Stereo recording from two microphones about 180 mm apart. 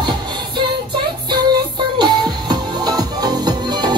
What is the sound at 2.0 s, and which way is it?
Music, 25° right (ahead or behind).